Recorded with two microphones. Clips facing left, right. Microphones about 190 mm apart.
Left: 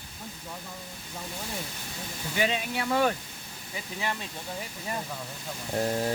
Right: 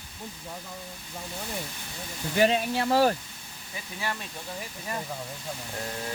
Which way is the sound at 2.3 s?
50° right (ahead or behind).